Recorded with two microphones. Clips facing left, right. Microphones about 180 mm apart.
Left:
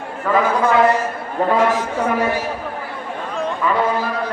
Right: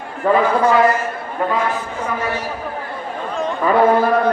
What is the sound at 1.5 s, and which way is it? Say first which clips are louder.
Speech: left 4 dB; 90° left.